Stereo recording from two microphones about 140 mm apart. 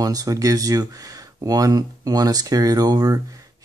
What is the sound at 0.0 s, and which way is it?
Speech, 25° right (ahead or behind).